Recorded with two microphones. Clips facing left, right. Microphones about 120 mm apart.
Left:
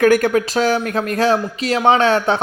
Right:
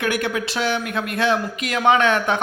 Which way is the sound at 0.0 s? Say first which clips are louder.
Left 9 dB; 45° left (ahead or behind).